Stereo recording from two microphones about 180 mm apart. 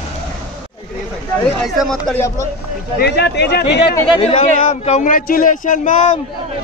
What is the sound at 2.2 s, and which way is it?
Speech, 15° left (ahead or behind).